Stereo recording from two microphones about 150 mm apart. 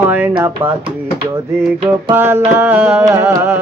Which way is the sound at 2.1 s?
15° right (ahead or behind).